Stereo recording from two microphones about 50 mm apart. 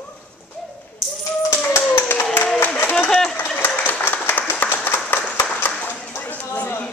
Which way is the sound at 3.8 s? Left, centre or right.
Left.